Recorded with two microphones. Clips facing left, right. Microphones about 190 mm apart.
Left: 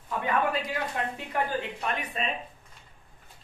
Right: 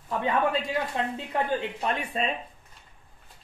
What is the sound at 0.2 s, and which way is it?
Speech, 25° right (ahead or behind).